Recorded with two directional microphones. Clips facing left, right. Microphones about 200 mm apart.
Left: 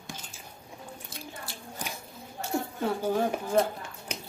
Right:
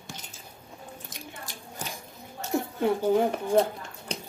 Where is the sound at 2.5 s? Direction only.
20° right (ahead or behind).